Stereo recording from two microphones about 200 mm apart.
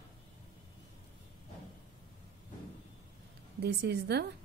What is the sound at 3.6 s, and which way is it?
Speech, 55° right (ahead or behind).